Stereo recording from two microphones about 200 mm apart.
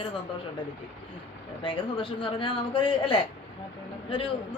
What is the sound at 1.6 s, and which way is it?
Speech, 25° left (ahead or behind).